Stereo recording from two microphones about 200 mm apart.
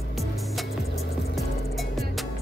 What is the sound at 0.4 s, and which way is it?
Music, centre (ahead or behind).